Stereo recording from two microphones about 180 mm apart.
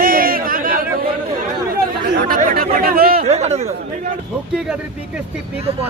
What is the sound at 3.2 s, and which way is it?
Speech, 35° right (ahead or behind).